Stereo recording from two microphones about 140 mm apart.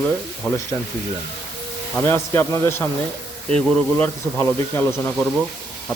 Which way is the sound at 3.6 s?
5° left (ahead or behind).